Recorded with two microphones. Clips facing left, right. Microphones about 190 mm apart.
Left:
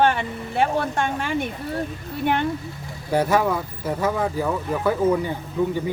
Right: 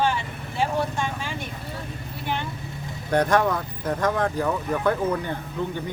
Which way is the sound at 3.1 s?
5° left (ahead or behind).